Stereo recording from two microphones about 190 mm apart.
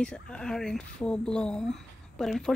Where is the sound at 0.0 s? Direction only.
5° left (ahead or behind).